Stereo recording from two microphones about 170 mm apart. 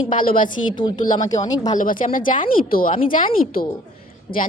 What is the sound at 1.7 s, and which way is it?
A woman's voice, 50° left (ahead or behind).